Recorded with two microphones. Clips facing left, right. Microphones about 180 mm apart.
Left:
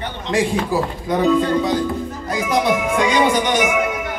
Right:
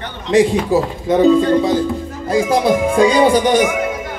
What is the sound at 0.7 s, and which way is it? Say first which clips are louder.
Speech: right 6 dB; 25° right (ahead or behind).